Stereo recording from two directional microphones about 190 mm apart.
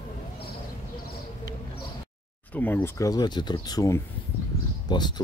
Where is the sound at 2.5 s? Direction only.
10° left (ahead or behind).